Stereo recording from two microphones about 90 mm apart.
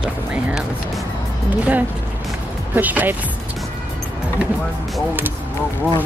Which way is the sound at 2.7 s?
20° right (ahead or behind).